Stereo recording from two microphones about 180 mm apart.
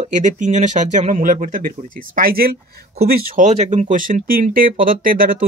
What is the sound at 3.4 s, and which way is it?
Speech, 40° right (ahead or behind).